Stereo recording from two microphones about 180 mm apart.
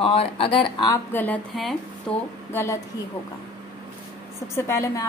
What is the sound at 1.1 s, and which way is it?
Speech, 10° left (ahead or behind).